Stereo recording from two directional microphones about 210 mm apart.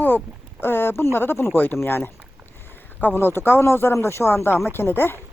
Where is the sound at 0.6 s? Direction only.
10° left (ahead or behind).